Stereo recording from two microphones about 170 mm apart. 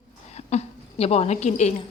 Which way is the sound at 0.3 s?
40° left (ahead or behind).